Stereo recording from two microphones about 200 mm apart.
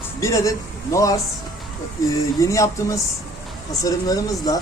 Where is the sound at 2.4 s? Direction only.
15° left (ahead or behind).